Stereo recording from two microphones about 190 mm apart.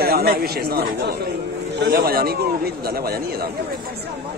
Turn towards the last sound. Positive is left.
turn(degrees=-55)  # may be behind; listen again after turning